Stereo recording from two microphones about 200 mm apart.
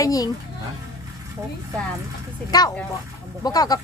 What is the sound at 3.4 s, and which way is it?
Speech, 20° left (ahead or behind).